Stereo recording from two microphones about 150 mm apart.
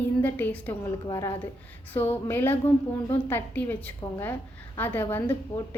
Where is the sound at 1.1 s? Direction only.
20° left (ahead or behind).